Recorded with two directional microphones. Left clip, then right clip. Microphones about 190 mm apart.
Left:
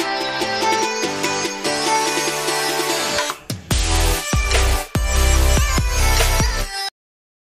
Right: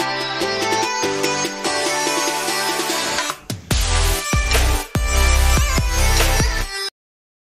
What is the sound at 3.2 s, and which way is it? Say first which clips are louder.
Music: left 1 dB; centre (ahead or behind).